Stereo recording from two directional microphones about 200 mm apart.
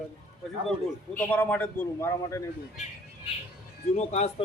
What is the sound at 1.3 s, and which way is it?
A man's voice, 10° left (ahead or behind).